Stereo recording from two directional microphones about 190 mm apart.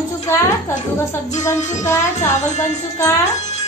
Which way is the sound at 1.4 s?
15° left (ahead or behind).